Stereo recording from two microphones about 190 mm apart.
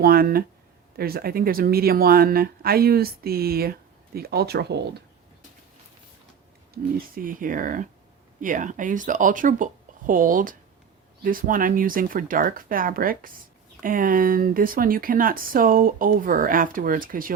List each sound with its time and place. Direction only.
0.0 s speech: 50° right (ahead or behind)
6.9 s speech: 45° right (ahead or behind)